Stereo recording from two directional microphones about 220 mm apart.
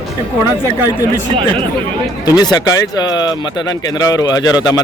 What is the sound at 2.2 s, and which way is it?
Speech, 20° left (ahead or behind).